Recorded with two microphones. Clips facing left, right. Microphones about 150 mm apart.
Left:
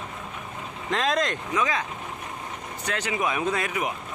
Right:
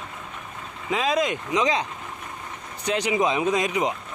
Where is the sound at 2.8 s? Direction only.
15° right (ahead or behind).